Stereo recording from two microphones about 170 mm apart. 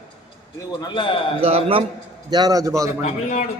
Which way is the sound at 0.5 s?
25° left (ahead or behind).